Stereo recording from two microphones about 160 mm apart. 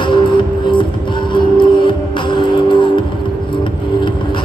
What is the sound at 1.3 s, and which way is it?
Music, 30° left (ahead or behind).